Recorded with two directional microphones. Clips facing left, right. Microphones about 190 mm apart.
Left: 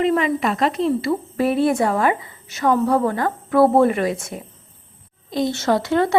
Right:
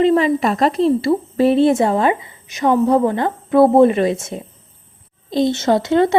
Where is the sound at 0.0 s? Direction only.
30° right (ahead or behind).